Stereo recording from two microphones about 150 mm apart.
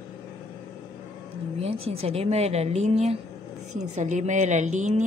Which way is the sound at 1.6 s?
40° right (ahead or behind).